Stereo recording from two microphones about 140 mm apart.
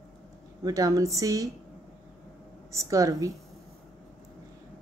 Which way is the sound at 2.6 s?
20° right (ahead or behind).